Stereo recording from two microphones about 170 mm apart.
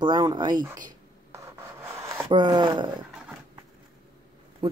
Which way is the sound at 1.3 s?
15° right (ahead or behind).